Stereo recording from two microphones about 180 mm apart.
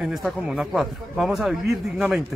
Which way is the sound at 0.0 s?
Centre (ahead or behind).